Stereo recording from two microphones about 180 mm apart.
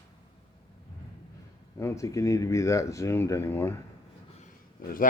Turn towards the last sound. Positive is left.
turn(degrees=50)  # may be behind; listen again after turning